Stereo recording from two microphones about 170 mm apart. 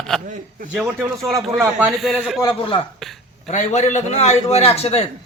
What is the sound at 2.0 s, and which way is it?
Speech, centre (ahead or behind).